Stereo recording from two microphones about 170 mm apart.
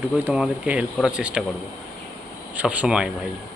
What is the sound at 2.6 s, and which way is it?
Speech, 5° right (ahead or behind).